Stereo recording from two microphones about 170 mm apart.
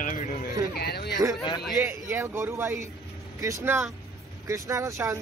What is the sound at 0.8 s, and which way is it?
Speech, 70° left (ahead or behind).